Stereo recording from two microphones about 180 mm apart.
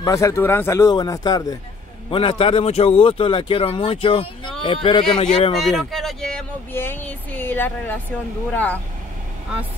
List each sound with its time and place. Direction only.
0.0 s a man's voice: 15° left (ahead or behind)
5.6 s speech: centre (ahead or behind)